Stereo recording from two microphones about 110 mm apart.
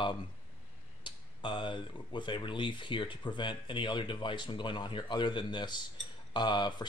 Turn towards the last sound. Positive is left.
turn(degrees=45)  # may be behind; listen again after turning